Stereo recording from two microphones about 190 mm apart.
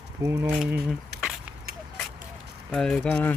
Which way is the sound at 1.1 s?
60° right (ahead or behind).